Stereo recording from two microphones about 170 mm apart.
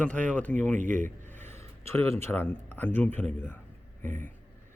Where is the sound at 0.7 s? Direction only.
50° right (ahead or behind).